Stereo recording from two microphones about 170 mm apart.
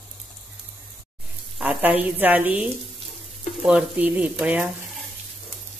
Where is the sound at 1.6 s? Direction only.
5° right (ahead or behind).